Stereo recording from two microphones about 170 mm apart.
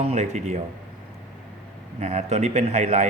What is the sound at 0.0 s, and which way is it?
Speech, 40° right (ahead or behind).